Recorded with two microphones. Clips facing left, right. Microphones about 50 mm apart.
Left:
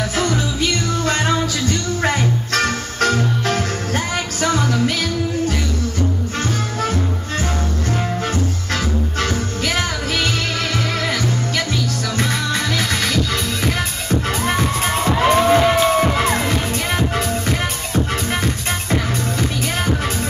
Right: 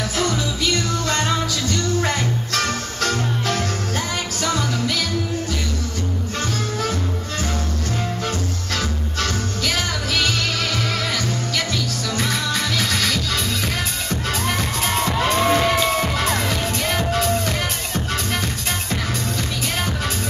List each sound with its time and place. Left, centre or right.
2.5 s music: left
9.2 s music: centre
15.0 s music: centre